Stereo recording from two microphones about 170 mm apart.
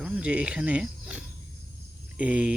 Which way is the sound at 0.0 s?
5° right (ahead or behind).